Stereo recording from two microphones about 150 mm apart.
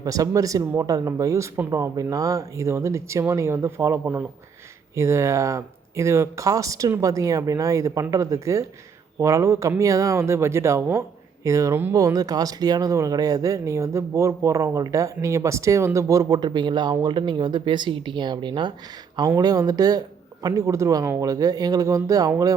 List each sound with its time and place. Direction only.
0.0 s speech: 25° right (ahead or behind)